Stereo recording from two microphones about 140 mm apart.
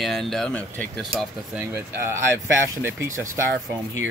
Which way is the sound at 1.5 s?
15° right (ahead or behind).